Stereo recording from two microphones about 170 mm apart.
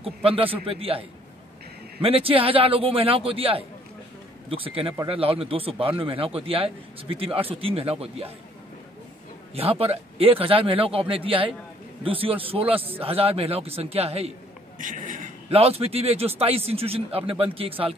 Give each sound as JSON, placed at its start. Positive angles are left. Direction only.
{"t": 0.0, "sound": "speech", "side_deg": -35}
{"t": 9.6, "sound": "speech", "side_deg": -35}
{"t": 14.8, "sound": "speech", "side_deg": -50}
{"t": 15.5, "sound": "speech", "side_deg": -35}